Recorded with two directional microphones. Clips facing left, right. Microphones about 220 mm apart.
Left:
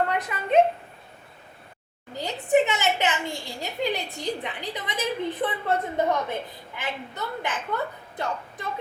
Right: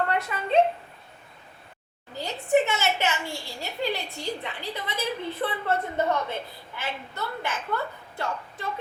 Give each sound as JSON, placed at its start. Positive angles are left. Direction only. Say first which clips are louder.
{"t": 0.1, "sound": "speech", "louder": "left 1 dB", "side_deg": 15}
{"t": 2.1, "sound": "a child's voice", "louder": "left 1 dB", "side_deg": 15}